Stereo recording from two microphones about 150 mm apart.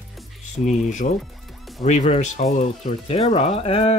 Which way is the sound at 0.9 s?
55° left (ahead or behind).